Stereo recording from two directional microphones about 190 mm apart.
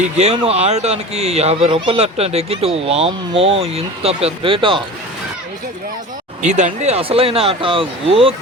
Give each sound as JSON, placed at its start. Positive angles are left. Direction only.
{"t": 0.2, "sound": "speech", "side_deg": -35}
{"t": 6.4, "sound": "speech", "side_deg": -40}